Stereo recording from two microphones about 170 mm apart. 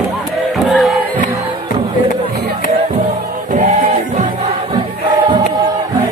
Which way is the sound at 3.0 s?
50° right (ahead or behind).